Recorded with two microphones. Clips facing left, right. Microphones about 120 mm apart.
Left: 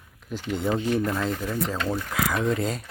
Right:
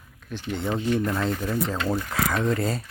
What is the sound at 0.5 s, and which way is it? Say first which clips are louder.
Speech: left 1 dB; 5° left (ahead or behind).